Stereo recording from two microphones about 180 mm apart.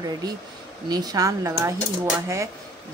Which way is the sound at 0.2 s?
20° right (ahead or behind).